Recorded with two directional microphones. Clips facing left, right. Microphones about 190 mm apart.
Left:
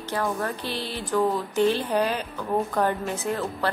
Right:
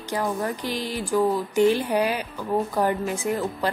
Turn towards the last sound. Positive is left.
turn(degrees=-10)  # may be behind; listen again after turning